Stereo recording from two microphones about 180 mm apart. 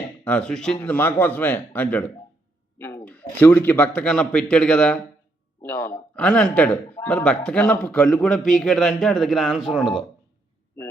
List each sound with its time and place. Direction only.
0.3 s speech: 5° left (ahead or behind)
5.6 s a man's voice: 20° left (ahead or behind)
6.1 s speech: 5° left (ahead or behind)